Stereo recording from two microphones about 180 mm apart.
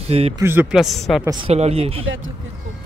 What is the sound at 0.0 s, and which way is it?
Speech, 35° right (ahead or behind).